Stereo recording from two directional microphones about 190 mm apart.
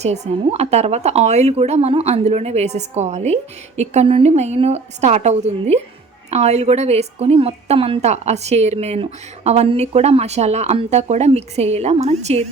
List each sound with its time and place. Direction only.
0.0 s a woman's voice: 35° right (ahead or behind)